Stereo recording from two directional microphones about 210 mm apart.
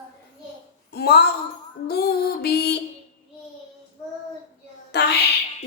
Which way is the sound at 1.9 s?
45° left (ahead or behind).